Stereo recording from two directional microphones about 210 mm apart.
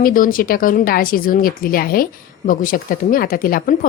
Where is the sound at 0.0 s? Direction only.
40° left (ahead or behind).